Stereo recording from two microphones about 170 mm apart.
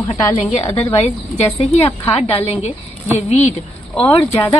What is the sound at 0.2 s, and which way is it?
Speech, 15° left (ahead or behind).